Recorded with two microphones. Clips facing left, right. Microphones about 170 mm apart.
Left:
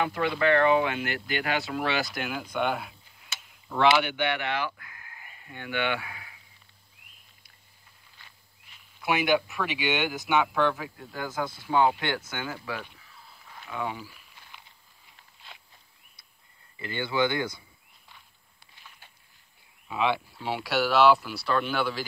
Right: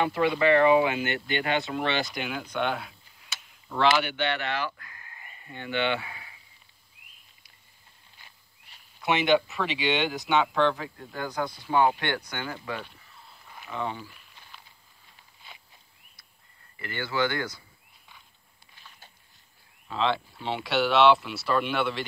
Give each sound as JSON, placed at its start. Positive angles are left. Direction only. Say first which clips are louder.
{"t": 0.0, "sound": "speech", "louder": "right 2 dB", "side_deg": 0}
{"t": 9.0, "sound": "speech", "louder": "right 2 dB", "side_deg": 0}
{"t": 11.6, "sound": "speech", "louder": "even", "side_deg": 15}
{"t": 12.6, "sound": "a sound", "louder": "right 1 dB", "side_deg": 5}
{"t": 14.5, "sound": "a sound", "louder": "even", "side_deg": 15}
{"t": 16.7, "sound": "speech", "louder": "left 2 dB", "side_deg": 15}
{"t": 19.9, "sound": "speech", "louder": "even", "side_deg": 10}